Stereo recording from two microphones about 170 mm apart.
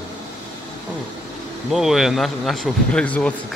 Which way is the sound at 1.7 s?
Centre (ahead or behind).